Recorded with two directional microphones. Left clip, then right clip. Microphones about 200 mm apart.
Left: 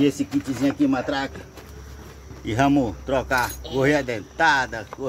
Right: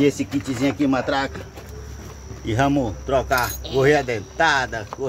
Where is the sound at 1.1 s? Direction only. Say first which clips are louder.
Right 4 dB; 10° right (ahead or behind).